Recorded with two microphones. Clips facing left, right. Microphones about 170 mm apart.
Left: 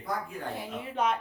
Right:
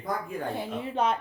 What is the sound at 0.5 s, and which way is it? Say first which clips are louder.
Speech: right 2 dB; 30° right (ahead or behind).